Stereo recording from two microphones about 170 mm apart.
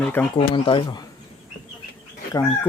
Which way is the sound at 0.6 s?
25° left (ahead or behind).